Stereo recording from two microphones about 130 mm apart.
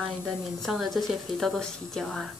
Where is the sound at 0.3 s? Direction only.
5° right (ahead or behind).